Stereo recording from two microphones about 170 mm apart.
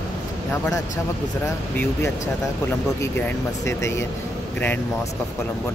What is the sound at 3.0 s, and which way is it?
Speech, 15° left (ahead or behind).